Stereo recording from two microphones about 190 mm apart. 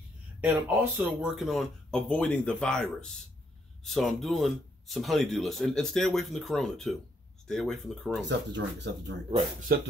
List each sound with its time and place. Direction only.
0.4 s speech: 10° right (ahead or behind)
8.3 s speech: 65° right (ahead or behind)
9.7 s speech: 55° right (ahead or behind)